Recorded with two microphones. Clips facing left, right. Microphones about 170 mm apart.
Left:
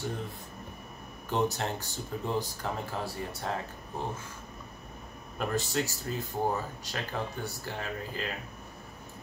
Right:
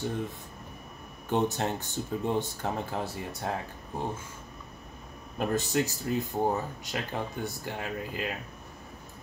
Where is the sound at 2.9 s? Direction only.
20° right (ahead or behind).